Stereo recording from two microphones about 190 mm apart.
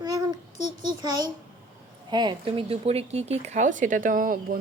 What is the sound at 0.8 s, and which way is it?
A child's voice, 20° right (ahead or behind).